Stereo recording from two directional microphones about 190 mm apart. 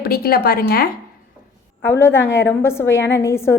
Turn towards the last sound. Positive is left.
turn(degrees=15)  # may be behind; listen again after turning